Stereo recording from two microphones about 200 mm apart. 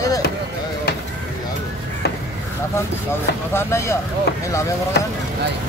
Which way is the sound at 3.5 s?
15° left (ahead or behind).